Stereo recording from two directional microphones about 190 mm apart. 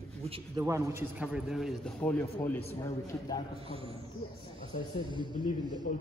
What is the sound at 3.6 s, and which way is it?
Speech, 30° right (ahead or behind).